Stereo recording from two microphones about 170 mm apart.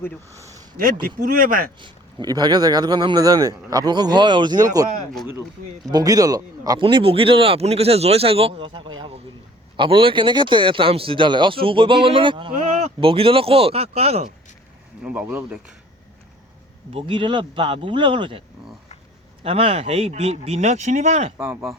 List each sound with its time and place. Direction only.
0.3 s a sound: 20° right (ahead or behind)
1.0 s speech: 55° right (ahead or behind)
1.8 s speech: 25° right (ahead or behind)
5.9 s speech: 20° right (ahead or behind); by 14.3 s 40° right (ahead or behind)
15.0 s speech: 10° right (ahead or behind)
16.9 s speech: 30° right (ahead or behind)
21.4 s speech: 5° right (ahead or behind)